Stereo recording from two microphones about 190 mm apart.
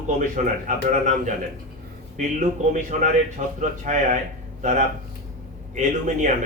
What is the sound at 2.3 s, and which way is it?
A man's voice, 40° right (ahead or behind).